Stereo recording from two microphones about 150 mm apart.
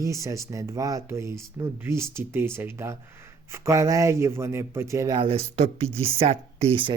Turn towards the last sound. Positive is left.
turn(degrees=-40)  # may be behind; listen again after turning